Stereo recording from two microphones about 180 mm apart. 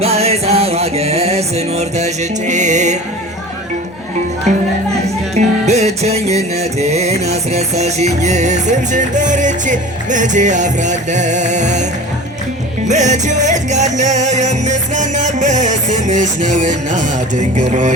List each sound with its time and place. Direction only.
0.0 s music: 35° right (ahead or behind)
5.3 s music: 40° right (ahead or behind)
12.9 s music: 40° right (ahead or behind)